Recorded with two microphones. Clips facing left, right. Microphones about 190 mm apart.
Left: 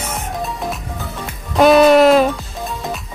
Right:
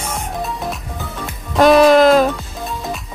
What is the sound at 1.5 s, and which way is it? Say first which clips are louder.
Music: even; centre (ahead or behind).